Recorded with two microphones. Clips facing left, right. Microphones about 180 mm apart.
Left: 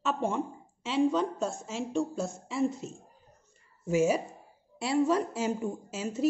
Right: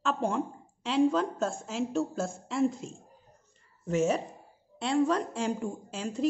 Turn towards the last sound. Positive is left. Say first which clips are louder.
# left 1 dB
turn(degrees=5)  # may be behind; listen again after turning